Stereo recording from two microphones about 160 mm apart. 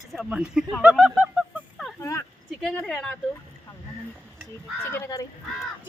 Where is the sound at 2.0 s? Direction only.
20° left (ahead or behind).